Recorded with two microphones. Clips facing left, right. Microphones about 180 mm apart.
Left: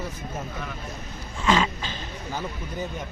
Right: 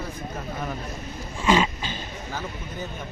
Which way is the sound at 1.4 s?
5° right (ahead or behind).